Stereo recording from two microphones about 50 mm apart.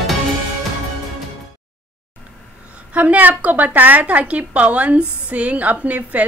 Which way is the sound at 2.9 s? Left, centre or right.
Right.